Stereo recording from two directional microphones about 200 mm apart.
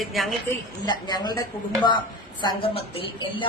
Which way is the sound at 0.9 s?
20° left (ahead or behind).